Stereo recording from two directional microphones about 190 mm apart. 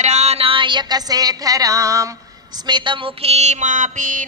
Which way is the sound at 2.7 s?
25° right (ahead or behind).